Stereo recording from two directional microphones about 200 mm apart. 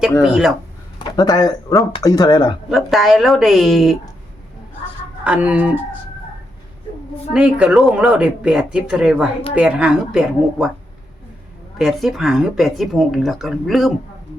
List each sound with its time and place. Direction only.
0.2 s speech: centre (ahead or behind)
0.9 s speech: 20° left (ahead or behind)
2.6 s speech: centre (ahead or behind)
5.2 s speech: 5° right (ahead or behind)
7.3 s speech: 5° right (ahead or behind)
11.8 s speech: centre (ahead or behind)